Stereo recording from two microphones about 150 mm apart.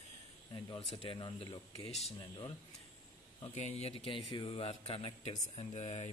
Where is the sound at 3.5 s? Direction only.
45° left (ahead or behind).